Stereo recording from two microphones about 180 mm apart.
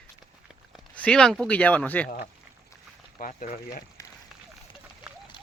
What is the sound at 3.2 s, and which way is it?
Speech, 45° left (ahead or behind).